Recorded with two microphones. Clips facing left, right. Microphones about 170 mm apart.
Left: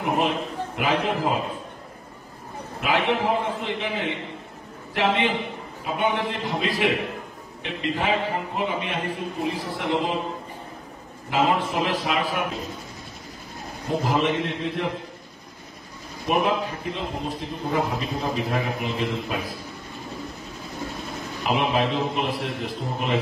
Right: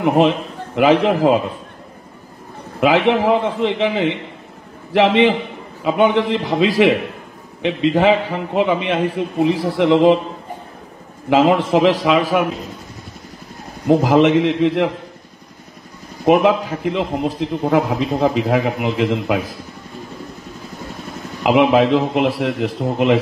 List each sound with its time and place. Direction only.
0.7 s a man's voice: 90° right
2.8 s a man's voice: 90° right
11.2 s a man's voice: 90° right
13.8 s a man's voice: 90° right
16.3 s a man's voice: 90° right
21.4 s a man's voice: 90° right